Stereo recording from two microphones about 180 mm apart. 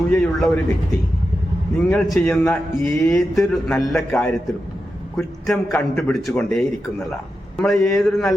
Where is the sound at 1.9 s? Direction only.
Centre (ahead or behind).